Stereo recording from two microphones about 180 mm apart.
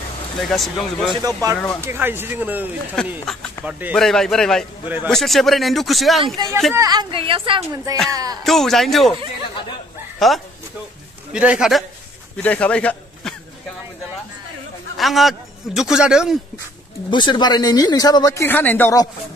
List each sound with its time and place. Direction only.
0.4 s a man's voice: centre (ahead or behind)
1.1 s a woman's voice: 20° right (ahead or behind)
3.6 s speech: 15° left (ahead or behind)
3.9 s a man's voice: centre (ahead or behind)
4.8 s speech: 10° right (ahead or behind)
5.1 s a man's voice: centre (ahead or behind)
6.2 s a woman's voice: 25° right (ahead or behind)
8.5 s a man's voice: centre (ahead or behind)
10.1 s a man's voice: centre (ahead or behind)
12.4 s a man's voice: 5° left (ahead or behind)
15.0 s a man's voice: centre (ahead or behind)
17.1 s speech: 25° left (ahead or behind)